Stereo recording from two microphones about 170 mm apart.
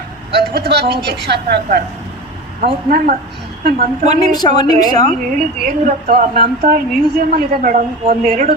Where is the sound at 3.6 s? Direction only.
65° right (ahead or behind).